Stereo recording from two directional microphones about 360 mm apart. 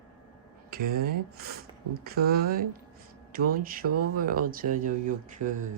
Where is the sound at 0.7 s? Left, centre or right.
Right.